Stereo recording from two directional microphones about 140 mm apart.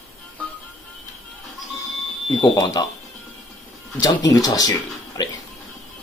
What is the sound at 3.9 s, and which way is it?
Speech, 25° left (ahead or behind).